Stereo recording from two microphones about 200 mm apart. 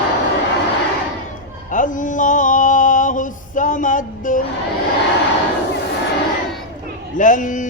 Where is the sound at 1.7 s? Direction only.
40° left (ahead or behind).